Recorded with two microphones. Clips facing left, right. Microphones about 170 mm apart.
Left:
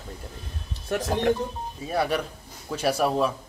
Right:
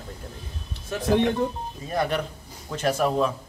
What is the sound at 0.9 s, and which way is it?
Speech, 65° left (ahead or behind).